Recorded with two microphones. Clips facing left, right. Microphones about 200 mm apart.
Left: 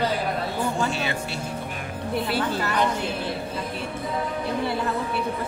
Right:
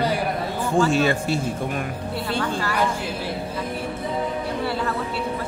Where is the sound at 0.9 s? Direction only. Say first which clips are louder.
Right 8 dB; 45° right (ahead or behind).